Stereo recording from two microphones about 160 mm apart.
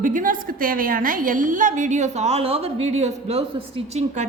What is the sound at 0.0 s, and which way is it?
A woman's voice, 55° right (ahead or behind).